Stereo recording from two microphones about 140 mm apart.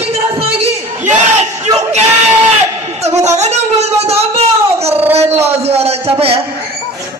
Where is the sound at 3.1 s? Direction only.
50° right (ahead or behind).